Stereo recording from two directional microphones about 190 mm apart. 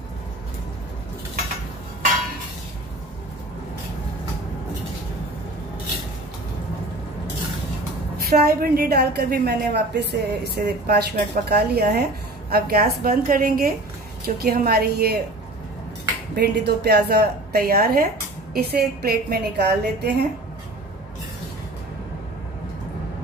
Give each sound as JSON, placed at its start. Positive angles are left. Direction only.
{"t": 8.3, "sound": "a woman's voice", "side_deg": -55}
{"t": 16.3, "sound": "a woman's voice", "side_deg": -60}